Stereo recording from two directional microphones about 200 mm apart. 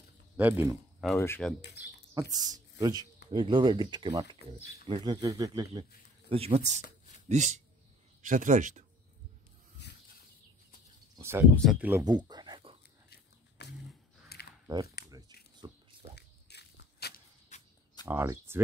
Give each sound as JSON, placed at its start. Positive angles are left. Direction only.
{"t": 0.4, "sound": "speech", "side_deg": -10}
{"t": 1.0, "sound": "speech", "side_deg": 10}
{"t": 1.6, "sound": "speech", "side_deg": 55}
{"t": 2.1, "sound": "speech", "side_deg": -20}
{"t": 11.1, "sound": "speech", "side_deg": -10}
{"t": 11.5, "sound": "speech", "side_deg": 0}
{"t": 12.0, "sound": "a sound", "side_deg": -20}
{"t": 13.1, "sound": "a sound", "side_deg": 55}
{"t": 15.0, "sound": "a sound", "side_deg": -20}
{"t": 16.2, "sound": "biting", "side_deg": 55}
{"t": 17.5, "sound": "a sound", "side_deg": 35}
{"t": 18.0, "sound": "speech", "side_deg": -10}